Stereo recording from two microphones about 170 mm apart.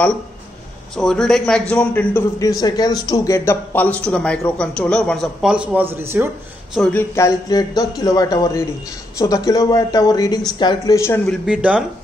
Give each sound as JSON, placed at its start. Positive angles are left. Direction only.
{"t": 0.9, "sound": "a man's voice", "side_deg": 5}
{"t": 2.3, "sound": "a man's voice", "side_deg": 20}
{"t": 6.7, "sound": "a man's voice", "side_deg": 5}
{"t": 11.4, "sound": "a man's voice", "side_deg": -5}